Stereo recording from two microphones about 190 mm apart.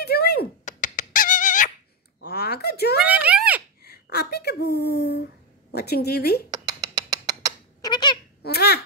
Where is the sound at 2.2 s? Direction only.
60° left (ahead or behind).